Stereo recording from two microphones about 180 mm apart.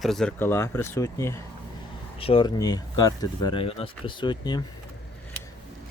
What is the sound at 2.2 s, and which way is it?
Speech, 30° left (ahead or behind).